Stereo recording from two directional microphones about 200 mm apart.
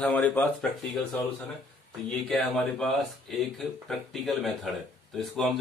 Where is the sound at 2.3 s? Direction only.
Centre (ahead or behind).